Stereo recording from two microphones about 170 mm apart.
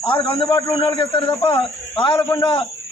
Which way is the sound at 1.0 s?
35° left (ahead or behind).